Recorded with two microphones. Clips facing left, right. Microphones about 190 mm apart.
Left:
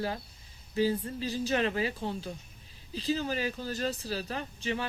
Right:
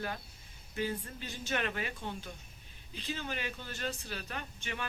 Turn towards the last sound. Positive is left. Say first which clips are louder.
# left 7 dB
turn(degrees=30)  # may be behind; listen again after turning